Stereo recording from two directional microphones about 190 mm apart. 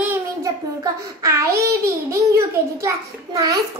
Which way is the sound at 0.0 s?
10° right (ahead or behind).